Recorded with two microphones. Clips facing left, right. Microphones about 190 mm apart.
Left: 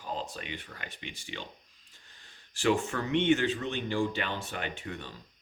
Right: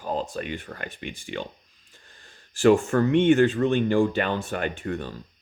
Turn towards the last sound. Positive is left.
turn(degrees=-50)  # may be behind; listen again after turning